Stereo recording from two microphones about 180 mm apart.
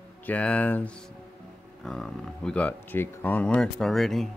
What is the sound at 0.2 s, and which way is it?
Speech, 10° left (ahead or behind).